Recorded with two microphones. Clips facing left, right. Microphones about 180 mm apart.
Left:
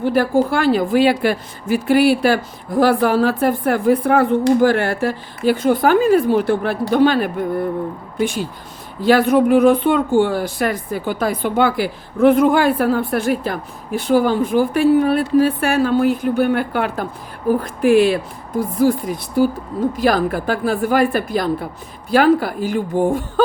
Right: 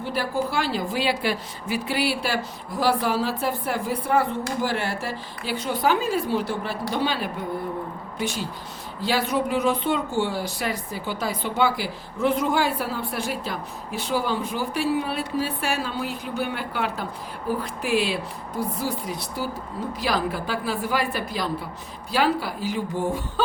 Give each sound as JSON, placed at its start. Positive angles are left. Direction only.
{"t": 0.0, "sound": "a woman's voice", "side_deg": 50}
{"t": 9.0, "sound": "speech", "side_deg": 50}